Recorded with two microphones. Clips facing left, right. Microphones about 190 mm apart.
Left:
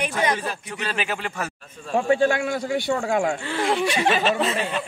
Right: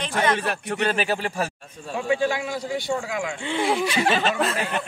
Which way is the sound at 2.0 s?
55° left (ahead or behind).